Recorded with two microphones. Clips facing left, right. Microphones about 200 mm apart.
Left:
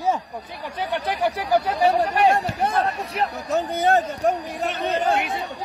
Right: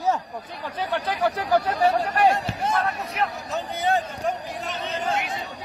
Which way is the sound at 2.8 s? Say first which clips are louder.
Left 3 dB; 30° left (ahead or behind).